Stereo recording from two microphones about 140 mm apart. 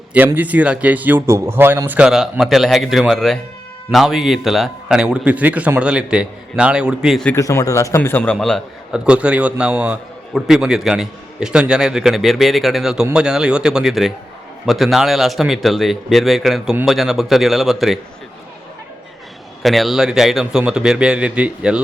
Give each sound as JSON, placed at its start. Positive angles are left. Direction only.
{"t": 0.3, "sound": "a man's voice", "side_deg": -10}
{"t": 7.3, "sound": "a man's voice", "side_deg": 20}
{"t": 9.0, "sound": "a man's voice", "side_deg": -10}
{"t": 19.6, "sound": "a man's voice", "side_deg": 0}